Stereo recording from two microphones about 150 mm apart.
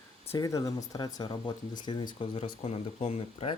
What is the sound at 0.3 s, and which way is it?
Speech, 25° left (ahead or behind).